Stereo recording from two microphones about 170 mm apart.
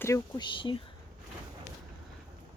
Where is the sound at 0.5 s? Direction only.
30° left (ahead or behind).